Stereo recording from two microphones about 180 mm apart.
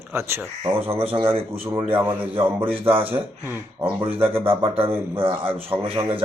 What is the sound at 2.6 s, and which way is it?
A man's voice, 30° right (ahead or behind).